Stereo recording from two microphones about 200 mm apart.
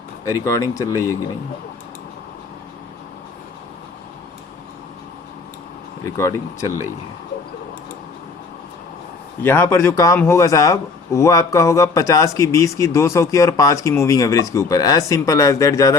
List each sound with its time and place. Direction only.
0.3 s a man's voice: 15° left (ahead or behind)
6.1 s a man's voice: 15° left (ahead or behind)
9.4 s a man's voice: 10° left (ahead or behind)